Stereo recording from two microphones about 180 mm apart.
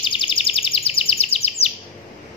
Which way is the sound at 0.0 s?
25° left (ahead or behind).